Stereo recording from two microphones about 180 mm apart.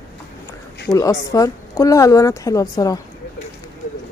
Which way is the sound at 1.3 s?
20° left (ahead or behind).